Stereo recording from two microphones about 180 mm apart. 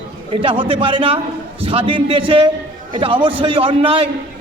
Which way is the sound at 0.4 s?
30° right (ahead or behind).